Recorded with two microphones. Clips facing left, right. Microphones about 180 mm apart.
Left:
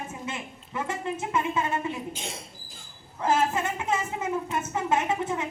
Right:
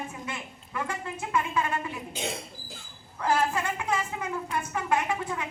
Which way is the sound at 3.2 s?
20° left (ahead or behind).